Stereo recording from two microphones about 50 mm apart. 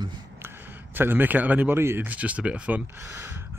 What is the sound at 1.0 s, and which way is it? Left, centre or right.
Speech, right.